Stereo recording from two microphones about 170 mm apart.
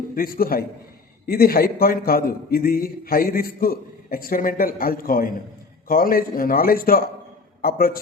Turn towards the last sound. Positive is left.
turn(degrees=60)  # may be behind; listen again after turning